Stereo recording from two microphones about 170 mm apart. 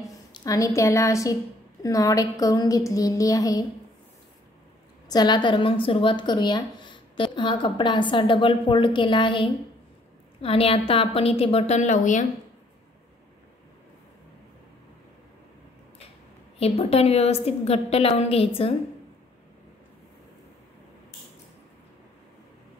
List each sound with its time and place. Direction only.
0.3 s a woman's voice: 20° left (ahead or behind)
5.0 s a woman's voice: 25° left (ahead or behind); by 12.3 s 45° left (ahead or behind)
16.5 s a woman's voice: 35° left (ahead or behind)